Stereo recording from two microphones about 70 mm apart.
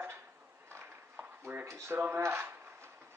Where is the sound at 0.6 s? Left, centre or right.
Right.